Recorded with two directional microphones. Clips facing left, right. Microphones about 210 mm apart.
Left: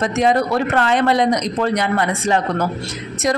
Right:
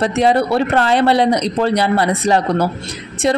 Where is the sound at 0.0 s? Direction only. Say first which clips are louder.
Right 2 dB; 30° right (ahead or behind).